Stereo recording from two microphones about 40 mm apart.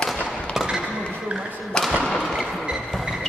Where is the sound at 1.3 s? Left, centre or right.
Right.